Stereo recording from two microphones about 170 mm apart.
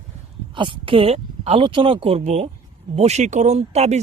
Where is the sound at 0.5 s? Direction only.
30° right (ahead or behind).